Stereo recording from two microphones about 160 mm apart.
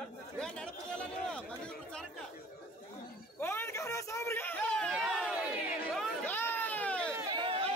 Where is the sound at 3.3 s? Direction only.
15° left (ahead or behind).